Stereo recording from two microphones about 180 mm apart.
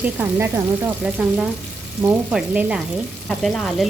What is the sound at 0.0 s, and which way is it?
Frying, 10° right (ahead or behind).